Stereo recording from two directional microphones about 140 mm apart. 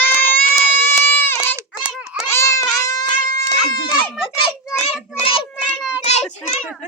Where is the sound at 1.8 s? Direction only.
5° right (ahead or behind).